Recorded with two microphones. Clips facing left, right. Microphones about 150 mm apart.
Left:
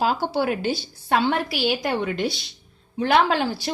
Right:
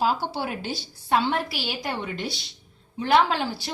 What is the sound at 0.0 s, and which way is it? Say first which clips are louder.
A woman's voice: left 3 dB; 70° left (ahead or behind).